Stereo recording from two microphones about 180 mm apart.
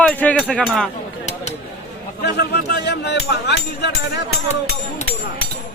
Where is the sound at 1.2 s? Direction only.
40° left (ahead or behind).